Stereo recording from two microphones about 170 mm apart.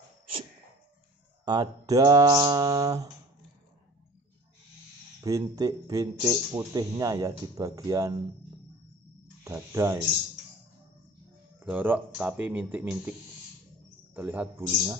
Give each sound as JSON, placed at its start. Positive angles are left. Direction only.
{"t": 1.4, "sound": "a man's voice", "side_deg": -25}
{"t": 5.2, "sound": "a man's voice", "side_deg": -20}
{"t": 9.4, "sound": "speech", "side_deg": -15}
{"t": 11.6, "sound": "speech", "side_deg": -10}
{"t": 14.1, "sound": "speech", "side_deg": -10}